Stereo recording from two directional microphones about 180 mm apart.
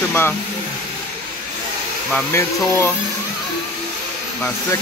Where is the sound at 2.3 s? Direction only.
15° left (ahead or behind).